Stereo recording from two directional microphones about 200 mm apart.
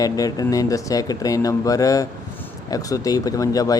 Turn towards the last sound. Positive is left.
turn(degrees=15)  # may be behind; listen again after turning